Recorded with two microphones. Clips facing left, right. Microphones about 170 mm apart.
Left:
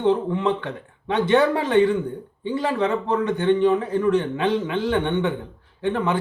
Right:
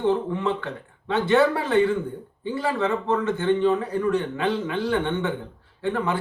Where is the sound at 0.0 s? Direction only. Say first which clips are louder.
Left 3 dB; 20° left (ahead or behind).